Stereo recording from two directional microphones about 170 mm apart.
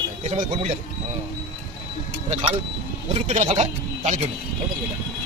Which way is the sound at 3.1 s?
40° right (ahead or behind).